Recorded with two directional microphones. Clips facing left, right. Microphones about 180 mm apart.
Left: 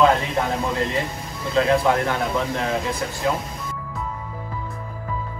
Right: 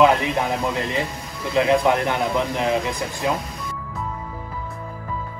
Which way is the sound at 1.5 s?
20° right (ahead or behind).